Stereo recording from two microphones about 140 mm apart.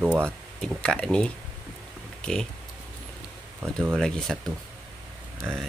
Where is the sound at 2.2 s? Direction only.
5° left (ahead or behind).